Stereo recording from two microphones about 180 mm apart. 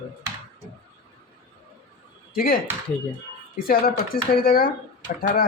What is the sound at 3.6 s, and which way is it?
A man's voice, 55° left (ahead or behind).